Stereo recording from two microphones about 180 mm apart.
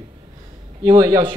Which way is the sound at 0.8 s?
20° right (ahead or behind).